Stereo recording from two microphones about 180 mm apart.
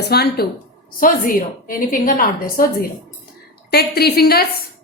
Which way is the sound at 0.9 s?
50° left (ahead or behind).